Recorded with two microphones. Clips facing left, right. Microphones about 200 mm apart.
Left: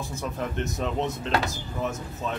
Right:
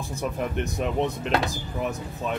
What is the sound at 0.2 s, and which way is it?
Speech, 15° right (ahead or behind).